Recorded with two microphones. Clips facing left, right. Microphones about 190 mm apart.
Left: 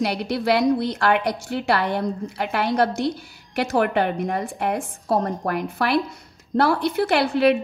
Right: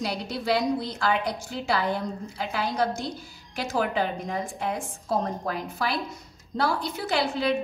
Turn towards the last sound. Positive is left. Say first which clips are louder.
# left 7 dB
turn(degrees=65)  # may be behind; listen again after turning